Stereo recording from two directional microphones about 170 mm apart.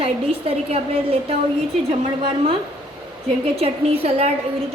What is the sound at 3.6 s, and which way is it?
Speech, 35° right (ahead or behind).